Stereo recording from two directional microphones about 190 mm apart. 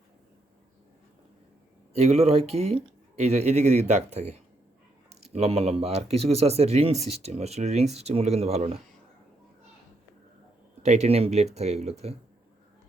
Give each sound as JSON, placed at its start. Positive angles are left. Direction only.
{"t": 1.9, "sound": "speech", "side_deg": -35}
{"t": 10.8, "sound": "speech", "side_deg": -35}